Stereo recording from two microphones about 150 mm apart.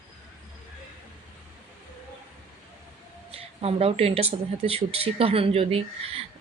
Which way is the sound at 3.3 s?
40° right (ahead or behind).